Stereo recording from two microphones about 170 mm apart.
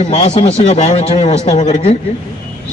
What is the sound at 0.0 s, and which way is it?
A man's voice, 40° left (ahead or behind).